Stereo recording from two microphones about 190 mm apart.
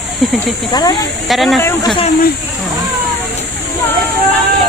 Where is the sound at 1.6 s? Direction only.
20° left (ahead or behind).